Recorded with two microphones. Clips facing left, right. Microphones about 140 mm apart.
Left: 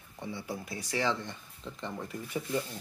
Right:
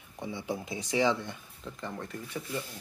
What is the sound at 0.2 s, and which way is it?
Speech, 15° right (ahead or behind).